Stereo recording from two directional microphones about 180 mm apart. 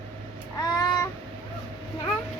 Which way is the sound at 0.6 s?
20° left (ahead or behind).